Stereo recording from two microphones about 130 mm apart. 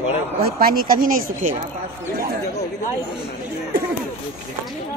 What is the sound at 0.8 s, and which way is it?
Speech, 90° right.